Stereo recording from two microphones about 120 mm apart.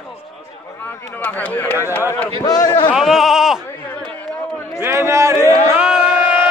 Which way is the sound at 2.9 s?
Centre (ahead or behind).